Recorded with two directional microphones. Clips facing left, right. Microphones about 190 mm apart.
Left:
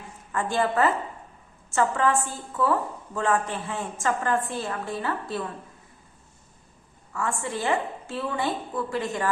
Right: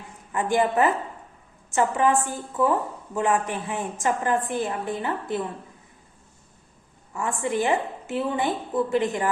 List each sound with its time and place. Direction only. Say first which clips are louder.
0.3 s a woman's voice: right 2 dB; 15° right (ahead or behind)
7.1 s a woman's voice: right 3 dB; 20° right (ahead or behind)